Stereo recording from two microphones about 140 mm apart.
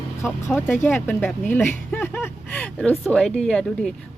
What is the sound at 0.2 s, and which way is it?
A woman's voice, 15° left (ahead or behind).